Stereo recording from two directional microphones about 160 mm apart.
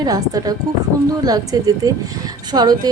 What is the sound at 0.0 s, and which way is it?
Speech, 25° right (ahead or behind).